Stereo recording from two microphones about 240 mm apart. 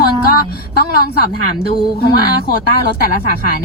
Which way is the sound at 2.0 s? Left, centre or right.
Left.